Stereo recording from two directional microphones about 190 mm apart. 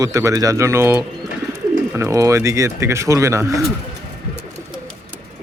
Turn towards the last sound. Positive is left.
turn(degrees=-15)  # may be behind; listen again after turning